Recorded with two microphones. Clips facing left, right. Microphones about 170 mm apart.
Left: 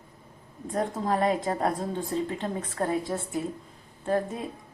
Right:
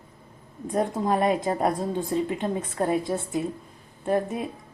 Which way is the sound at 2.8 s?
15° right (ahead or behind).